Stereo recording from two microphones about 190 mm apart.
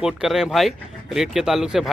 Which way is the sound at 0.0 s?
5° right (ahead or behind).